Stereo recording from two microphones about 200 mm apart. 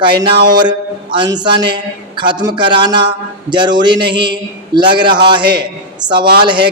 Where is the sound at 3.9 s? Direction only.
60° right (ahead or behind).